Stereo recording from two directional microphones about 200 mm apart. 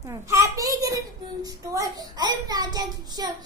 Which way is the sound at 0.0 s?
15° right (ahead or behind).